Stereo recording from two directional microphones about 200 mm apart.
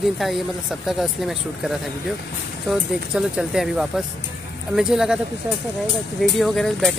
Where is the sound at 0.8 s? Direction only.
Centre (ahead or behind).